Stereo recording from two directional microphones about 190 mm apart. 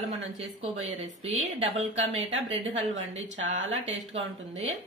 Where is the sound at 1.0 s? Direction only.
35° right (ahead or behind).